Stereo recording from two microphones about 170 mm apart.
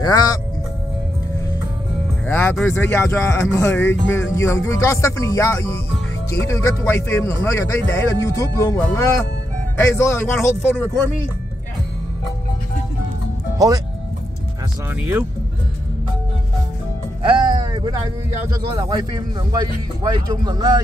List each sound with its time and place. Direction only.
0.0 s speech: 20° left (ahead or behind)
2.2 s speech: 10° left (ahead or behind)
10.3 s speech: 5° left (ahead or behind)
15.0 s speech: 10° right (ahead or behind)
17.2 s music: 30° right (ahead or behind)
18.5 s speech: 25° right (ahead or behind)